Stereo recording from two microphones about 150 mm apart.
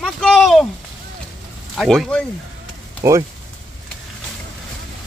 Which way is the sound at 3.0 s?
20° right (ahead or behind).